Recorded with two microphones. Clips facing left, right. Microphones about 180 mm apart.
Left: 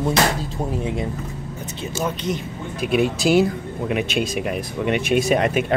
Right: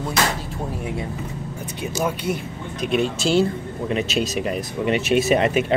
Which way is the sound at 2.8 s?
5° left (ahead or behind).